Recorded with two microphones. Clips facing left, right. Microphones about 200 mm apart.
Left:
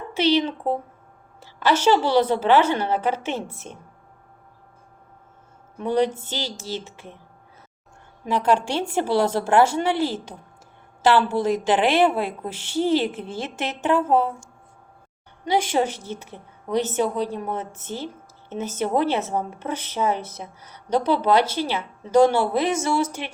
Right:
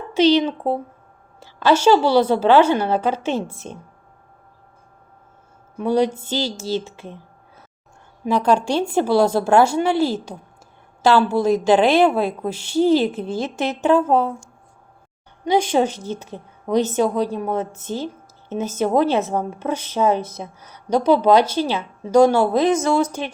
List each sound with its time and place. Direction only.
0.1 s a woman's voice: 15° right (ahead or behind)
5.8 s a woman's voice: 10° right (ahead or behind)
8.3 s a woman's voice: 15° right (ahead or behind)
15.4 s a woman's voice: 15° right (ahead or behind)